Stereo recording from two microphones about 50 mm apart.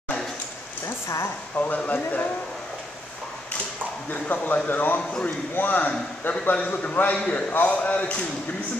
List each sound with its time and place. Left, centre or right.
1.0 s speech: left
1.6 s speech: left
4.1 s a man's voice: left
7.2 s a man's voice: left